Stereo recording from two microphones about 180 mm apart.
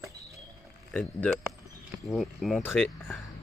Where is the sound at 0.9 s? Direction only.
5° left (ahead or behind).